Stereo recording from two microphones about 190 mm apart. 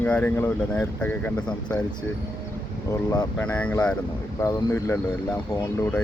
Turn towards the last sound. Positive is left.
turn(degrees=10)  # may be behind; listen again after turning